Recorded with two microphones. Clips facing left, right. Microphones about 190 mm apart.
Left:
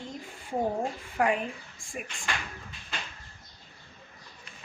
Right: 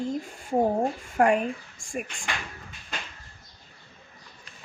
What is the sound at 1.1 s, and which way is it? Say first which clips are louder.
Speech: right 5 dB; 45° right (ahead or behind).